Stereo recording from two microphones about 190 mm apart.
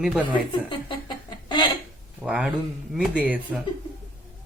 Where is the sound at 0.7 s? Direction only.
25° left (ahead or behind).